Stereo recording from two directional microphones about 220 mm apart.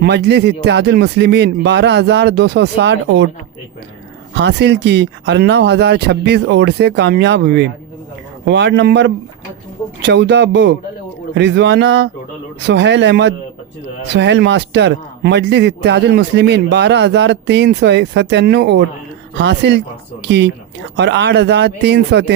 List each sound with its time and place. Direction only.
0.0 s a man's voice: 50° right (ahead or behind)
4.4 s a man's voice: 50° right (ahead or behind)